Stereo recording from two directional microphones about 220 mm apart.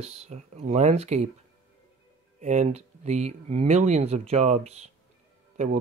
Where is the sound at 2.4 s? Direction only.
30° right (ahead or behind).